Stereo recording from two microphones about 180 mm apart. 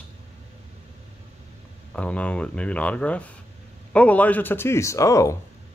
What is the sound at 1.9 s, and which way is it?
Speech, 5° left (ahead or behind).